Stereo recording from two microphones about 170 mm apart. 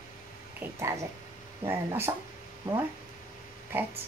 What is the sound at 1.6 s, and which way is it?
Speech, 15° right (ahead or behind).